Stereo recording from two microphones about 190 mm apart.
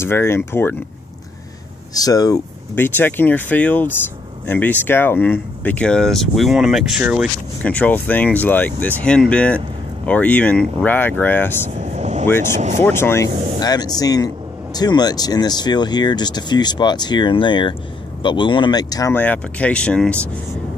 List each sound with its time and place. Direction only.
0.0 s speech: 15° left (ahead or behind)
2.0 s speech: 20° left (ahead or behind); by 7.2 s 5° right (ahead or behind)
7.6 s speech: 5° left (ahead or behind)
11.7 s vehicle: 35° right (ahead or behind)
12.3 s speech: 10° left (ahead or behind)
12.5 s speech: 40° right (ahead or behind)
12.8 s speech: 15° left (ahead or behind)